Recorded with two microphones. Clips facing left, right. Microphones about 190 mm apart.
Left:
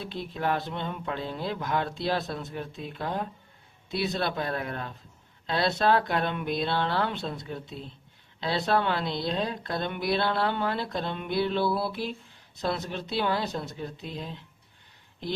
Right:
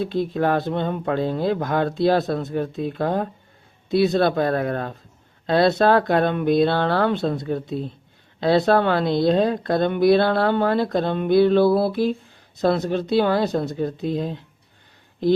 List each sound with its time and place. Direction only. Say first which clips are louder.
0.0 s speech: right 10 dB; 45° right (ahead or behind)